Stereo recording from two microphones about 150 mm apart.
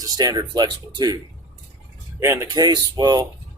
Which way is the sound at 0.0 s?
25° right (ahead or behind).